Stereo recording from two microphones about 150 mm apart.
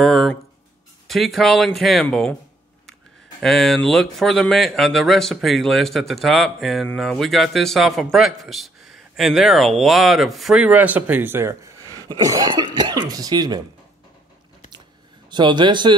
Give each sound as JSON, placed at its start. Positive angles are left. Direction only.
{"t": 0.0, "sound": "a man's voice", "side_deg": 0}
{"t": 15.3, "sound": "speech", "side_deg": -30}